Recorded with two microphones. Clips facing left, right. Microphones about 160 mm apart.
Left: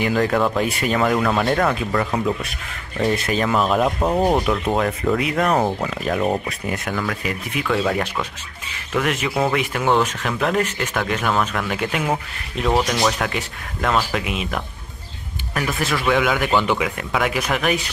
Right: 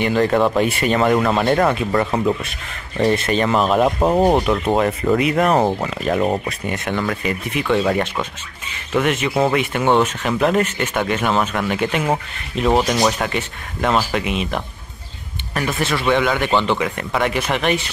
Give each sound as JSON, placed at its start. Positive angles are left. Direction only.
{"t": 0.0, "sound": "speech", "side_deg": 0}
{"t": 5.6, "sound": "speech", "side_deg": -15}
{"t": 5.9, "sound": "speech", "side_deg": 0}